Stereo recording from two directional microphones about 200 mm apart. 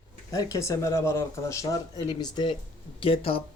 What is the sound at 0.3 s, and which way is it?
Speech, 15° left (ahead or behind).